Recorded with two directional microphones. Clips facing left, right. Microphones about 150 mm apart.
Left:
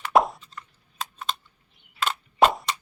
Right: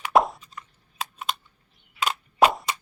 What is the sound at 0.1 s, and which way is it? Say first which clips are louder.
Plop: even; centre (ahead or behind).